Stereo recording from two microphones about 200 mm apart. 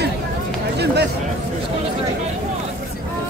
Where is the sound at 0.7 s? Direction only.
55° right (ahead or behind).